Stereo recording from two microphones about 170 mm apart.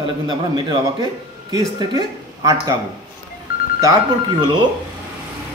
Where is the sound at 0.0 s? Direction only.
25° right (ahead or behind).